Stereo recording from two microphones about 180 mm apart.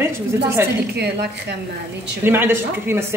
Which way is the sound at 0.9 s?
65° right (ahead or behind).